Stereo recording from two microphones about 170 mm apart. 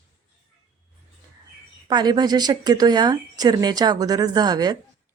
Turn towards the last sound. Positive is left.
turn(degrees=-25)  # may be behind; listen again after turning